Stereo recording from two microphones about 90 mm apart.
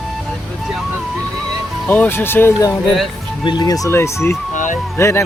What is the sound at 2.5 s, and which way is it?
Speech, 40° left (ahead or behind).